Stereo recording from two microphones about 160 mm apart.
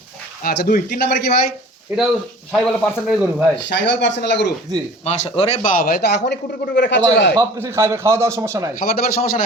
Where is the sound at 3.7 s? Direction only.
90° left.